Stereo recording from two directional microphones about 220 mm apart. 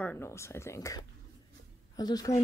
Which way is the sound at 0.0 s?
10° left (ahead or behind).